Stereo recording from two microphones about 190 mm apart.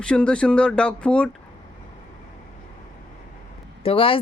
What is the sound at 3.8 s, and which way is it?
Speech, 30° left (ahead or behind).